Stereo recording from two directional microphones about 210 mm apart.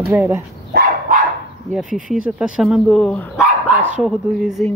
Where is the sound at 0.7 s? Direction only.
45° right (ahead or behind).